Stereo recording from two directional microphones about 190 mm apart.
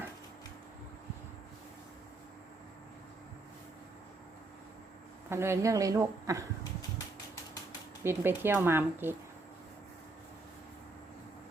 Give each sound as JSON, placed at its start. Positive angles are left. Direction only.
{"t": 5.3, "sound": "speech", "side_deg": -15}
{"t": 8.0, "sound": "speech", "side_deg": -10}